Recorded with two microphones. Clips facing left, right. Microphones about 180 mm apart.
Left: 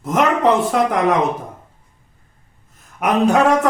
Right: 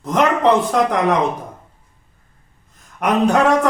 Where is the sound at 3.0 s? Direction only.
5° left (ahead or behind).